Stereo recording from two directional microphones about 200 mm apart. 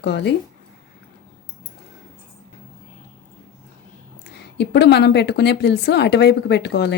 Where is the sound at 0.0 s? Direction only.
60° left (ahead or behind).